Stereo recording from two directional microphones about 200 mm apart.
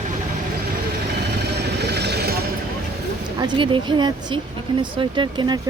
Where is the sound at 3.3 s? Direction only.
25° right (ahead or behind).